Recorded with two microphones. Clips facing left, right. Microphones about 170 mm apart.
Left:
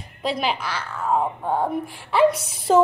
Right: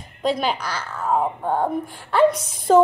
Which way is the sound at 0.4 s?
Centre (ahead or behind).